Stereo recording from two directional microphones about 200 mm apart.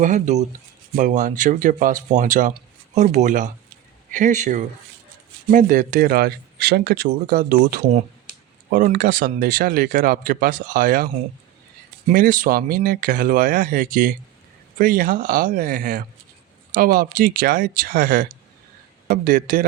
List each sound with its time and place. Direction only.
0.0 s speech: 35° right (ahead or behind)